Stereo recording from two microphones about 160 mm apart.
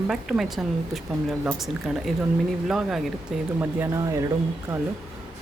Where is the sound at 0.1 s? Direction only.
Centre (ahead or behind).